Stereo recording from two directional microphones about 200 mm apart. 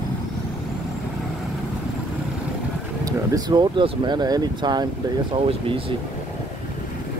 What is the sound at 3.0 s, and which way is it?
Speech, 20° right (ahead or behind).